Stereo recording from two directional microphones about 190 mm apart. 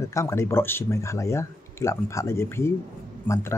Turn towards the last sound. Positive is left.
turn(degrees=15)  # may be behind; listen again after turning